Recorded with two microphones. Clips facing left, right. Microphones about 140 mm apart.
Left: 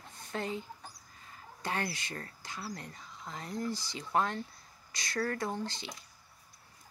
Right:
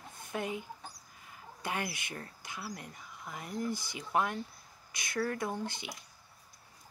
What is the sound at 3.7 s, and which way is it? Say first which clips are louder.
Speech: right 1 dB; 50° right (ahead or behind).